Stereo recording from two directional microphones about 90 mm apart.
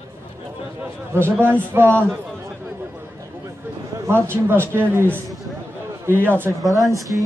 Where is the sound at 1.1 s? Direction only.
25° right (ahead or behind).